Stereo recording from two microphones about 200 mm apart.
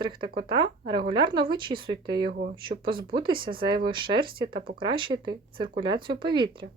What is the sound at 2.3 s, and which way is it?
Speech, 40° right (ahead or behind).